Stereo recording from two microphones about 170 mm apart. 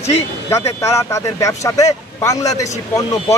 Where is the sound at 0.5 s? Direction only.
15° left (ahead or behind).